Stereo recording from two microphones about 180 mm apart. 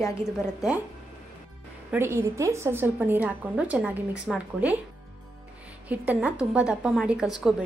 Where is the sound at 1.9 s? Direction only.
15° right (ahead or behind).